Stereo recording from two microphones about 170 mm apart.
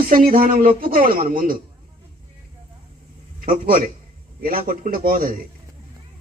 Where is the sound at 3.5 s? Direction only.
55° right (ahead or behind).